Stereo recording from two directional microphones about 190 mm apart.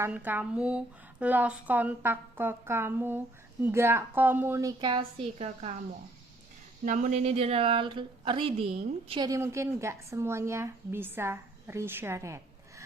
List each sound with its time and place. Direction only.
0.0 s speech: 10° right (ahead or behind); by 5.7 s 30° right (ahead or behind)
6.8 s speech: 40° right (ahead or behind); by 12.8 s 15° right (ahead or behind)